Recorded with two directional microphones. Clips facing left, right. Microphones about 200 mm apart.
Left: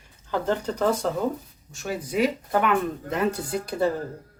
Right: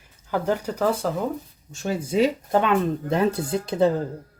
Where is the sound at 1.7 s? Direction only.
25° right (ahead or behind).